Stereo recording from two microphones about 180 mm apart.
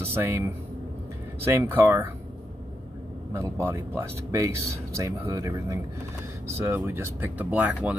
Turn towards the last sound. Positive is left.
turn(degrees=-10)  # may be behind; listen again after turning